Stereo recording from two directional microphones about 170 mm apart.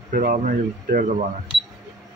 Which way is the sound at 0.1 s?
50° right (ahead or behind).